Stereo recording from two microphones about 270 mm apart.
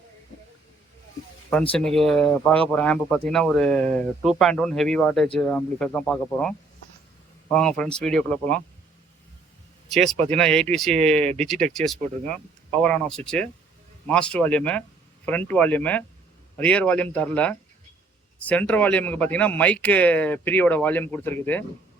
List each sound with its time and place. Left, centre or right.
1.7 s speech: centre
10.2 s speech: centre
10.9 s speech: right
11.3 s speech: centre